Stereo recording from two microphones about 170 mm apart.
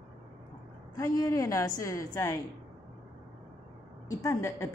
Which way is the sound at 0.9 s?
20° left (ahead or behind).